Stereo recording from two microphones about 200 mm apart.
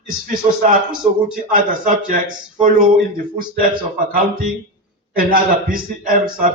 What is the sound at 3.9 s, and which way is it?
A man's voice, 45° right (ahead or behind).